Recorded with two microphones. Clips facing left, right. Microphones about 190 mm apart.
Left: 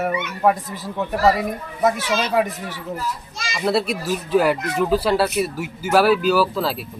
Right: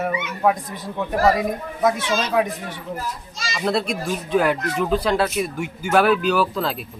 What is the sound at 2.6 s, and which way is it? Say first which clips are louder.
Speech: left 2 dB; 45° right (ahead or behind).